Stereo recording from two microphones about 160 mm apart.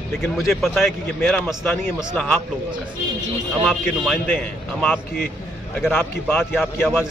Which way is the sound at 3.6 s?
Centre (ahead or behind).